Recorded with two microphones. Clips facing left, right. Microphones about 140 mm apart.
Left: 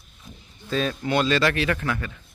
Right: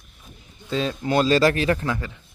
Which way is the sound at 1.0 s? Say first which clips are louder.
Right 4 dB; 35° right (ahead or behind).